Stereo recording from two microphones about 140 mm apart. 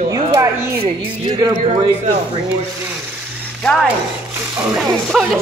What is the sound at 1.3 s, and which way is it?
Speech, 30° right (ahead or behind).